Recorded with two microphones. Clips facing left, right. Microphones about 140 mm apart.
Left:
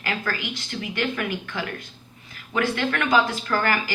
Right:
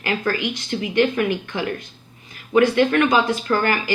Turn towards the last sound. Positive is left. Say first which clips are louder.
# right 4 dB
turn(degrees=-20)  # may be behind; listen again after turning